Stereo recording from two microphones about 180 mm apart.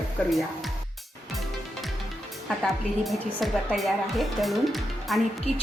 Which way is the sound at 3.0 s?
Centre (ahead or behind).